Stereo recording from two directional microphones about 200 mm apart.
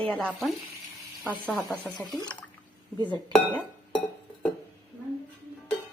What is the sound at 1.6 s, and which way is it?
Speech, 10° left (ahead or behind).